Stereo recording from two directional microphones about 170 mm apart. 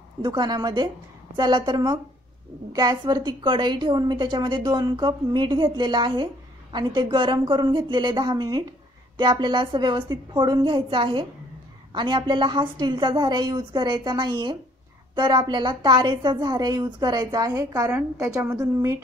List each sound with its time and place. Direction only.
0.2 s a woman's voice: 25° right (ahead or behind)